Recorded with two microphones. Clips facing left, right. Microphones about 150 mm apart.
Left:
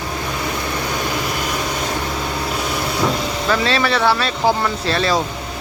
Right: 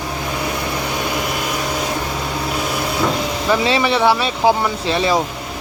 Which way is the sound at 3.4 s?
15° right (ahead or behind).